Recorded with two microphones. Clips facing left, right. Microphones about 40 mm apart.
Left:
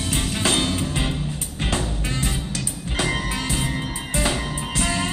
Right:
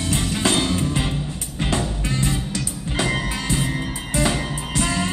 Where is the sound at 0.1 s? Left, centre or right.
Centre.